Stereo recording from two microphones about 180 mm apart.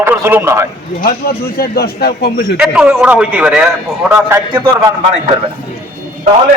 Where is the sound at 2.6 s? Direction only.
5° right (ahead or behind).